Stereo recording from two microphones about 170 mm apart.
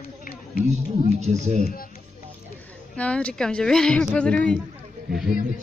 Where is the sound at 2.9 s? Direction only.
5° left (ahead or behind).